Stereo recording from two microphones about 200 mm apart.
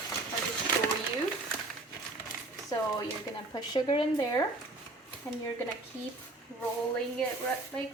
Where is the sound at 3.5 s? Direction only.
25° left (ahead or behind).